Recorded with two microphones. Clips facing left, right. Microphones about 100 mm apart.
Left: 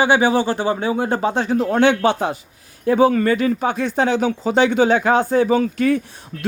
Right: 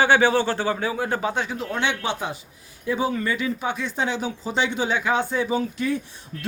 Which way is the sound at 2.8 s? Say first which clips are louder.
Left 9 dB; 60° left (ahead or behind).